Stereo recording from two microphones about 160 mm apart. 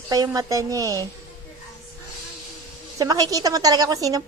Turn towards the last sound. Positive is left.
turn(degrees=-20)  # may be behind; listen again after turning